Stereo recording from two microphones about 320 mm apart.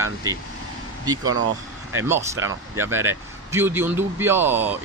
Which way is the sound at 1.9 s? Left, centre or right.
Centre.